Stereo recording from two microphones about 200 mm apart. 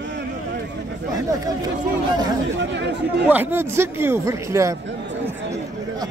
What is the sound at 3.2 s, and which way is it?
A man's voice, 10° right (ahead or behind).